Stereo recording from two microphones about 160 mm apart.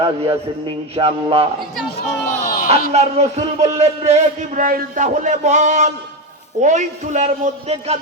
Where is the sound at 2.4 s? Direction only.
55° left (ahead or behind).